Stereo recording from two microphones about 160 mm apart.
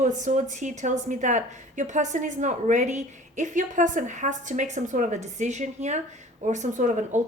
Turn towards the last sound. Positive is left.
turn(degrees=-50)  # may be behind; listen again after turning